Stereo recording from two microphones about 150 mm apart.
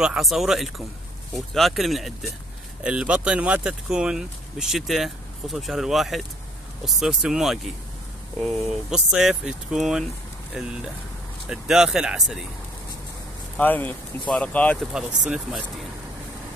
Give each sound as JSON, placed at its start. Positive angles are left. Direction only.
{"t": 0.0, "sound": "speech", "side_deg": -5}
{"t": 13.6, "sound": "speech", "side_deg": 10}
{"t": 14.9, "sound": "speech", "side_deg": -5}